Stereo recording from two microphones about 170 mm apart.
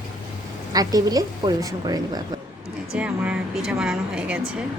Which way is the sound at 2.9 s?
5° right (ahead or behind).